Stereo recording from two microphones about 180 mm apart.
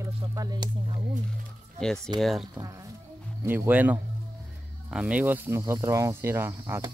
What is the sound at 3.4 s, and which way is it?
Speech, 10° right (ahead or behind).